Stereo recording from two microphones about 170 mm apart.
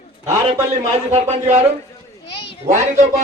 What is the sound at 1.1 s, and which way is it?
Speech, 40° right (ahead or behind).